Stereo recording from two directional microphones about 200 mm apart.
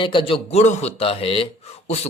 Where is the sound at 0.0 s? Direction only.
25° left (ahead or behind).